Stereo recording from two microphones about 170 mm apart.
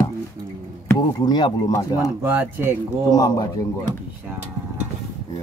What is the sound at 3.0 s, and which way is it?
Speech, 20° left (ahead or behind).